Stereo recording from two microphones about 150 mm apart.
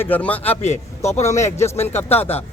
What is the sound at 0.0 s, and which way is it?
A man's voice, 10° left (ahead or behind).